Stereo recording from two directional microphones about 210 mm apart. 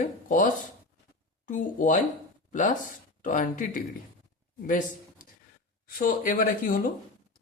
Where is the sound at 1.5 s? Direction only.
40° left (ahead or behind).